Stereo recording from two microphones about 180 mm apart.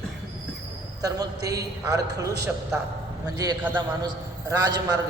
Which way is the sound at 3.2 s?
20° right (ahead or behind).